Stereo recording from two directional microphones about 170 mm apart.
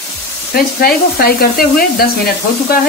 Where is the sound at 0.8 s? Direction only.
60° left (ahead or behind).